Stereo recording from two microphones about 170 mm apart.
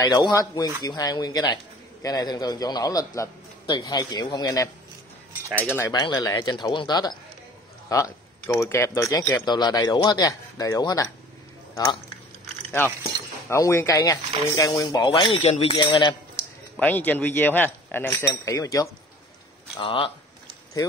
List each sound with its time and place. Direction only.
0.0 s a man's voice: 25° left (ahead or behind)
5.8 s a man's voice: 25° left (ahead or behind)
13.5 s a man's voice: 15° left (ahead or behind)
16.7 s speech: 10° left (ahead or behind)
19.8 s a man's voice: 30° left (ahead or behind)